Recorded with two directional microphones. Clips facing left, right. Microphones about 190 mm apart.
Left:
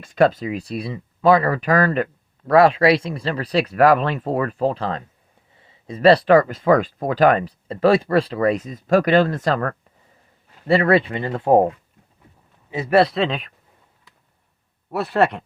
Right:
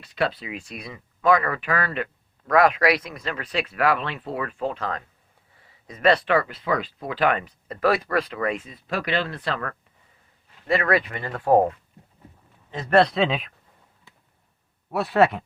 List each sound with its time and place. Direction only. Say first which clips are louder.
0.0 s speech: left 9 dB; 45° left (ahead or behind)
2.5 s speech: left 5 dB; 30° left (ahead or behind)
10.7 s speech: left 6 dB; 30° left (ahead or behind)
12.7 s speech: left 2 dB; 5° left (ahead or behind)
14.8 s speech: even; centre (ahead or behind)